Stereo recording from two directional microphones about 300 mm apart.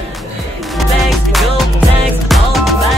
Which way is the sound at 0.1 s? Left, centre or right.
Centre.